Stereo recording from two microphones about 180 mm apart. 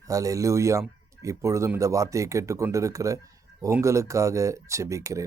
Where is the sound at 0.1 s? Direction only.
20° right (ahead or behind).